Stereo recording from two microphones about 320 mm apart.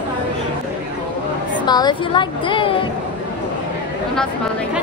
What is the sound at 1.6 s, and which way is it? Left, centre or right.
Speech, centre.